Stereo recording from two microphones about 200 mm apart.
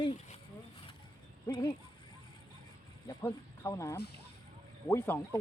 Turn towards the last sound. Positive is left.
turn(degrees=10)  # may be behind; listen again after turning